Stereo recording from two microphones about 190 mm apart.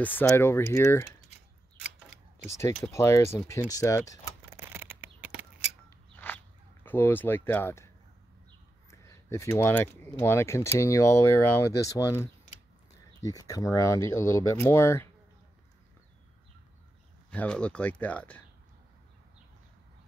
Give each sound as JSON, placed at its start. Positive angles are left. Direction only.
{"t": 0.0, "sound": "speech", "side_deg": 10}
{"t": 2.9, "sound": "speech", "side_deg": 15}
{"t": 4.5, "sound": "a sound", "side_deg": -10}
{"t": 6.1, "sound": "zipper", "side_deg": 10}
{"t": 8.9, "sound": "speech", "side_deg": 15}
{"t": 17.3, "sound": "speech", "side_deg": 5}